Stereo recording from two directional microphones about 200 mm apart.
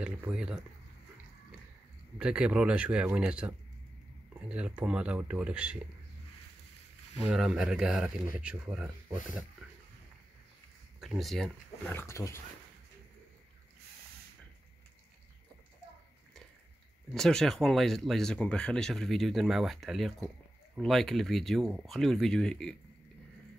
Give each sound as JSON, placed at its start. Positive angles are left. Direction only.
{"t": 0.0, "sound": "speech", "side_deg": -5}
{"t": 2.1, "sound": "speech", "side_deg": -5}
{"t": 7.2, "sound": "speech", "side_deg": 0}
{"t": 11.0, "sound": "speech", "side_deg": 0}
{"t": 17.1, "sound": "speech", "side_deg": 0}